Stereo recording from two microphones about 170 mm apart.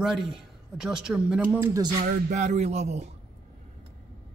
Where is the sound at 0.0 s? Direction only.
Centre (ahead or behind); by 2.0 s 20° right (ahead or behind).